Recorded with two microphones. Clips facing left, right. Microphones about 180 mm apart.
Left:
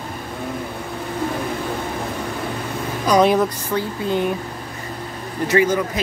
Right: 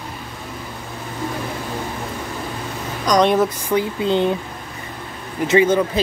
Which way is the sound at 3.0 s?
5° left (ahead or behind).